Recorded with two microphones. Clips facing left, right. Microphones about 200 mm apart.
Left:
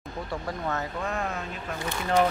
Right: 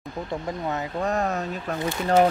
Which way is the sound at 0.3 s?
20° right (ahead or behind).